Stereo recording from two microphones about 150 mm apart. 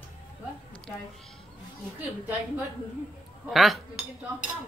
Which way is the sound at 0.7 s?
5° left (ahead or behind).